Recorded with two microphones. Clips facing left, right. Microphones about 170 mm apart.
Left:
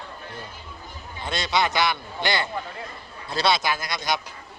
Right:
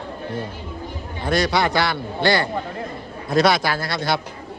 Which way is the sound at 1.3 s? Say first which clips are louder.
Right 5 dB; 20° left (ahead or behind).